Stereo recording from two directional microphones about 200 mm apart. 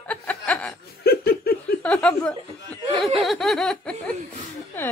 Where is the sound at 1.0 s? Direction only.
50° left (ahead or behind).